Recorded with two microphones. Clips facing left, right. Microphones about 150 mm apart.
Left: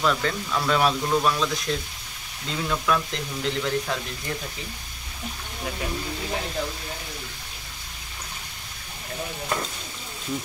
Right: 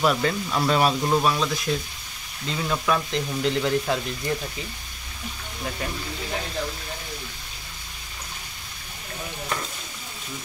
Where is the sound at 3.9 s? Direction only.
5° right (ahead or behind).